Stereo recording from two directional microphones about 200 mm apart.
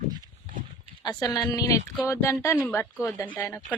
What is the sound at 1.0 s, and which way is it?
A woman's voice, 20° left (ahead or behind).